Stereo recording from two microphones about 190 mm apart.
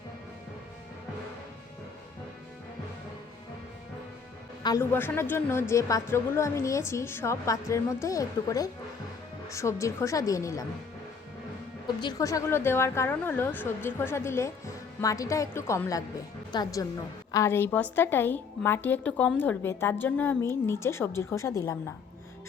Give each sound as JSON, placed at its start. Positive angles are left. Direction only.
{"t": 4.6, "sound": "a woman's voice", "side_deg": 15}
{"t": 11.9, "sound": "a woman's voice", "side_deg": 20}